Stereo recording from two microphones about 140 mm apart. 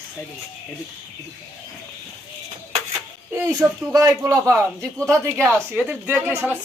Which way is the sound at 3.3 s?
20° right (ahead or behind).